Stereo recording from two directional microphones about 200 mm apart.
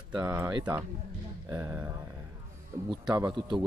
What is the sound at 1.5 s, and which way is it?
Speech, 10° right (ahead or behind).